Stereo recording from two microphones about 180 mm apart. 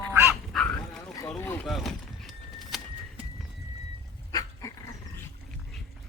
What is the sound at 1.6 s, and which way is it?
Vehicle, centre (ahead or behind).